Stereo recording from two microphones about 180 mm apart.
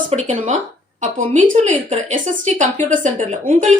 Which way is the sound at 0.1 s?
40° right (ahead or behind).